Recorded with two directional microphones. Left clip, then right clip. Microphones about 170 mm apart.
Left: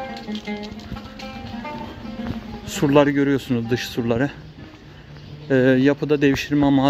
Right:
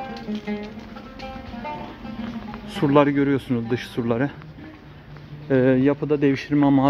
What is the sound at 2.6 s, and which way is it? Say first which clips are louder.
Speech: left 1 dB; 20° left (ahead or behind).